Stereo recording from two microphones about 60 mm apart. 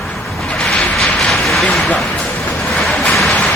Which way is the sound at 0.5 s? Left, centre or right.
Centre.